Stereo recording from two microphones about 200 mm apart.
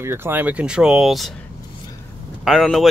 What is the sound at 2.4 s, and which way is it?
Speech, centre (ahead or behind).